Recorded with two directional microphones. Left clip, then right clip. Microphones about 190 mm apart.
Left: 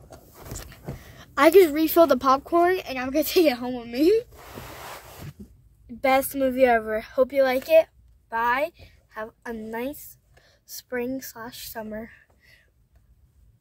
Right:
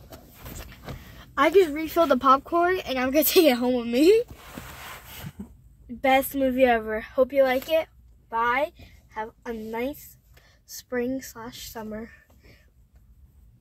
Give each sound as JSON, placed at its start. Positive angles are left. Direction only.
{"t": 0.6, "sound": "vehicle", "side_deg": 10}
{"t": 1.3, "sound": "speech", "side_deg": 25}
{"t": 2.1, "sound": "speech", "side_deg": 10}
{"t": 2.9, "sound": "a woman's voice", "side_deg": -55}
{"t": 6.0, "sound": "speech", "side_deg": 20}
{"t": 8.3, "sound": "a woman's voice", "side_deg": 20}